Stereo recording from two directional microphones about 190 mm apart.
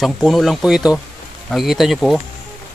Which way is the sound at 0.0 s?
Centre (ahead or behind).